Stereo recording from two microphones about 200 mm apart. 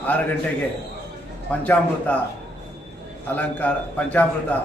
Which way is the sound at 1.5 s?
10° left (ahead or behind).